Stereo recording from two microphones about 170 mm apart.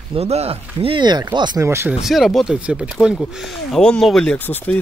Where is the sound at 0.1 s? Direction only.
35° right (ahead or behind); by 2.0 s 15° right (ahead or behind).